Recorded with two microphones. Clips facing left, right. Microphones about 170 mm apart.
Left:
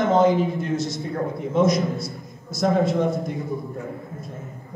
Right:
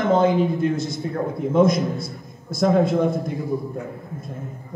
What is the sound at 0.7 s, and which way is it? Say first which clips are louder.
Speech: even; 55° right (ahead or behind).